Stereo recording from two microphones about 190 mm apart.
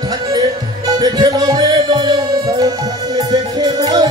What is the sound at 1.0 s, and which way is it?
Music, 20° right (ahead or behind).